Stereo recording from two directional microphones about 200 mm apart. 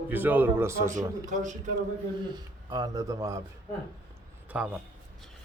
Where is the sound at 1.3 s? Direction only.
40° right (ahead or behind).